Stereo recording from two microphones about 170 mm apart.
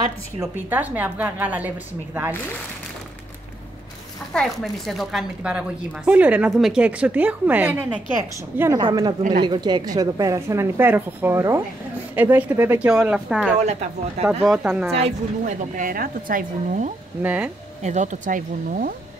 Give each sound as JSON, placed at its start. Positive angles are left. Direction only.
{"t": 0.4, "sound": "speech", "side_deg": -10}
{"t": 4.3, "sound": "speech", "side_deg": 5}
{"t": 13.6, "sound": "speech", "side_deg": -40}
{"t": 14.4, "sound": "speech", "side_deg": -5}
{"t": 15.0, "sound": "a woman's voice", "side_deg": -50}
{"t": 17.2, "sound": "speech", "side_deg": -10}
{"t": 17.8, "sound": "a woman's voice", "side_deg": -45}